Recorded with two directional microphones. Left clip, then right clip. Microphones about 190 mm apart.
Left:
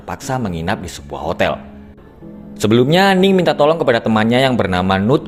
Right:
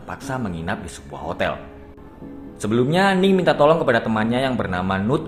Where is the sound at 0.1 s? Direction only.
35° left (ahead or behind).